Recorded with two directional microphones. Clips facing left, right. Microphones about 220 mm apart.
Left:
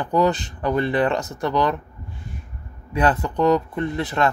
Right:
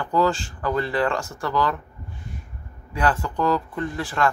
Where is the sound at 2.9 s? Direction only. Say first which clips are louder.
Left 3 dB; 20° left (ahead or behind).